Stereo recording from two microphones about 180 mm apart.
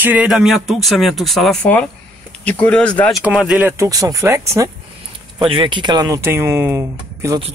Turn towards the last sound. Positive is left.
turn(degrees=-15)  # may be behind; listen again after turning